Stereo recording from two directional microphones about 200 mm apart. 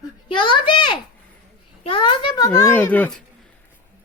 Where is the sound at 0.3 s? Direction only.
25° left (ahead or behind).